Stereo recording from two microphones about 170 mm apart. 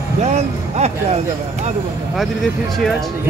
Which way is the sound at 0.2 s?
40° right (ahead or behind).